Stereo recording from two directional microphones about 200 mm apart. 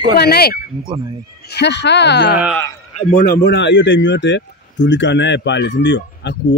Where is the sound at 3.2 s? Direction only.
55° left (ahead or behind).